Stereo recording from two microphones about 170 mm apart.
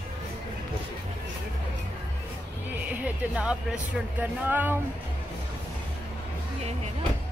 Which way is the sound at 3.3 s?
5° right (ahead or behind).